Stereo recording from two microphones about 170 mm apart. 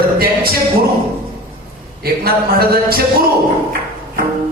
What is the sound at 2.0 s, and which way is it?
Music, 65° right (ahead or behind).